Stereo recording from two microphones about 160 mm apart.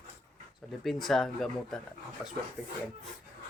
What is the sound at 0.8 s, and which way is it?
Speech, centre (ahead or behind).